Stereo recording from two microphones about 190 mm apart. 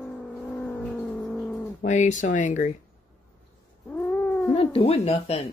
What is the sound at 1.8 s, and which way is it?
Speech, 40° left (ahead or behind).